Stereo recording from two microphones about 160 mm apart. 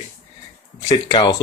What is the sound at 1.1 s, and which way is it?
Speech, 30° left (ahead or behind).